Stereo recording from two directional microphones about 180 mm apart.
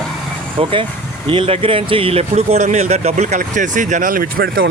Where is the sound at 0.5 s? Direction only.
30° right (ahead or behind); by 4.5 s 50° right (ahead or behind).